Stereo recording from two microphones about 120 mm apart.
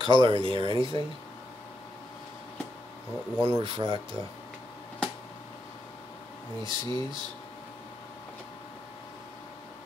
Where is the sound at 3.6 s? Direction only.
50° right (ahead or behind).